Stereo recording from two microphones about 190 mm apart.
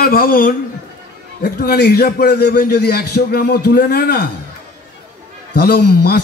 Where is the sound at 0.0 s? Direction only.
50° left (ahead or behind).